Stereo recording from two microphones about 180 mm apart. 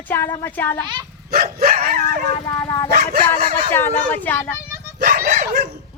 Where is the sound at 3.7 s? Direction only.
10° left (ahead or behind).